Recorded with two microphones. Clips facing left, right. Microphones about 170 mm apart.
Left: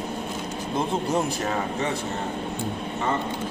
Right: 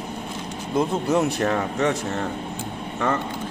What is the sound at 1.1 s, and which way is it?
Speech, 65° right (ahead or behind).